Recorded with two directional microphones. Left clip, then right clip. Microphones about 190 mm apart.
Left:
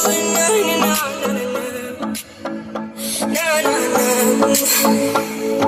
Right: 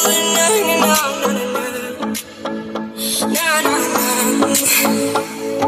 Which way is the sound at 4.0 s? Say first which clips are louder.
Left 2 dB; 20° left (ahead or behind).